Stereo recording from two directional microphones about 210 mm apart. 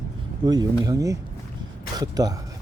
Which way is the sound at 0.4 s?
20° right (ahead or behind).